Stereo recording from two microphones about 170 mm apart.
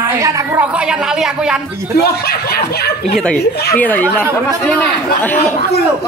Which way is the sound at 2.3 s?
65° left (ahead or behind).